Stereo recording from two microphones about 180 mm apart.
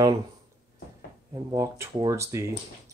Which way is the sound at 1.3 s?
15° right (ahead or behind).